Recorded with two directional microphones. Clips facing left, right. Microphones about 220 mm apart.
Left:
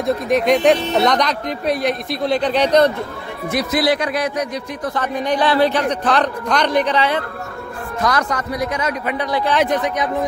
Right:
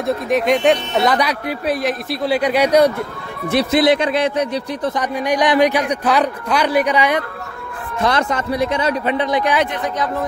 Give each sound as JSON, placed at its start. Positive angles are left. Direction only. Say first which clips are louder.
{"t": 0.0, "sound": "speech", "louder": "left 1 dB", "side_deg": 0}
{"t": 3.4, "sound": "a man's voice", "louder": "right 4 dB", "side_deg": -30}
{"t": 5.0, "sound": "a man's voice", "louder": "even", "side_deg": -10}
{"t": 8.0, "sound": "a man's voice", "louder": "right 2 dB", "side_deg": -25}